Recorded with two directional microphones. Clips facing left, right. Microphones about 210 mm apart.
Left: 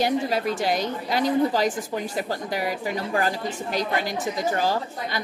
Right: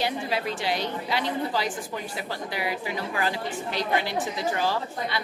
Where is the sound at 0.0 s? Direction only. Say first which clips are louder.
Left 5 dB; 45° left (ahead or behind).